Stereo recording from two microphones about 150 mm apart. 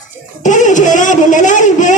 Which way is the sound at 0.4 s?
55° left (ahead or behind).